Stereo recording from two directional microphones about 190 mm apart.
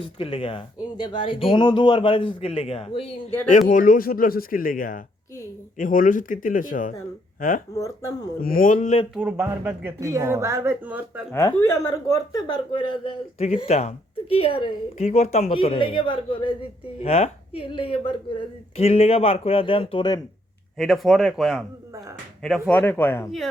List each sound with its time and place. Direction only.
0.2 s speech: 30° left (ahead or behind)
3.7 s speech: 45° left (ahead or behind)
7.8 s speech: 15° left (ahead or behind)
8.4 s speech: 50° left (ahead or behind)
9.1 s speech: 10° right (ahead or behind)
11.3 s speech: 15° left (ahead or behind)
20.7 s speech: centre (ahead or behind)